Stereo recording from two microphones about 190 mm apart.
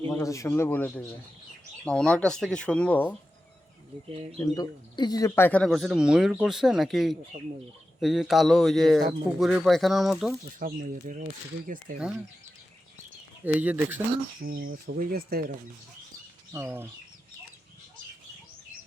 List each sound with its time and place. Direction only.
0.1 s a man's voice: 15° left (ahead or behind)
4.4 s speech: 20° left (ahead or behind); by 10.3 s centre (ahead or behind)
10.6 s speech: 45° right (ahead or behind)
13.4 s speech: 10° right (ahead or behind)
14.4 s speech: 50° right (ahead or behind)
16.5 s speech: 10° right (ahead or behind)